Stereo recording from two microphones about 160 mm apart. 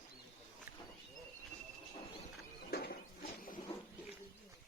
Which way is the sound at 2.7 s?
70° left (ahead or behind).